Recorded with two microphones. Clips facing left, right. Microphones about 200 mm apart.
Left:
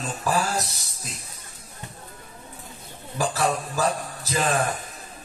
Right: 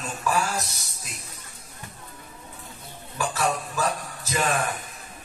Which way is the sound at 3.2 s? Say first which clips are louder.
Left 2 dB; 35° left (ahead or behind).